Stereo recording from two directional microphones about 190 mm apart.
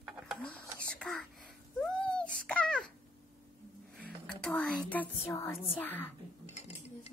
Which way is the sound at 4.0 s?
5° left (ahead or behind).